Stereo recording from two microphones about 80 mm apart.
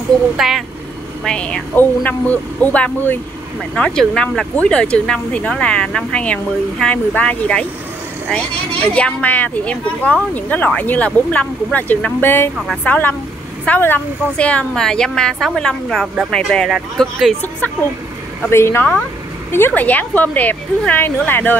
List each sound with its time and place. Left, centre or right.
0.4 s speech: centre
1.2 s speech: centre
3.7 s speech: centre; by 14.0 s left
14.3 s speech: centre
18.5 s speech: left